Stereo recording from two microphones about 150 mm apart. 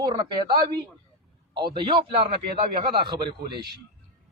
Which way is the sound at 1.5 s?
30° right (ahead or behind).